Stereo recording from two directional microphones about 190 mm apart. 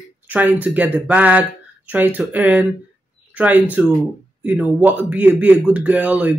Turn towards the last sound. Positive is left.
turn(degrees=-10)  # may be behind; listen again after turning